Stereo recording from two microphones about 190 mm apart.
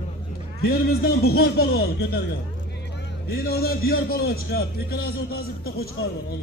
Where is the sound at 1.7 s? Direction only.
90° left.